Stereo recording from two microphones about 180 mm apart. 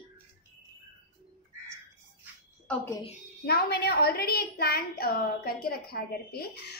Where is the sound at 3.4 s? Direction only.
60° left (ahead or behind).